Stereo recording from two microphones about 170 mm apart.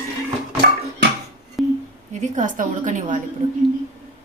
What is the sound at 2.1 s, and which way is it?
A woman's voice, 45° right (ahead or behind).